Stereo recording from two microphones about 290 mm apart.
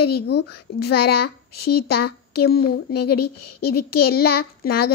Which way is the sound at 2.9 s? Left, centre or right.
Left.